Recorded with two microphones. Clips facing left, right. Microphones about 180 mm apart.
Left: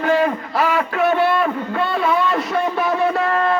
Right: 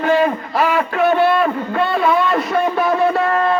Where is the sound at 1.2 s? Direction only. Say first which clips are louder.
Right 3 dB; 65° right (ahead or behind).